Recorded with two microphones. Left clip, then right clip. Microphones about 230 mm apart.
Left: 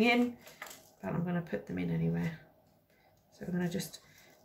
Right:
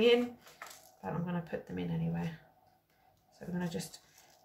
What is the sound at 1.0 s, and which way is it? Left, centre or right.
Speech, centre.